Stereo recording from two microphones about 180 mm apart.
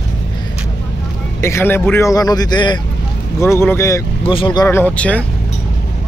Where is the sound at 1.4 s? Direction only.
15° left (ahead or behind).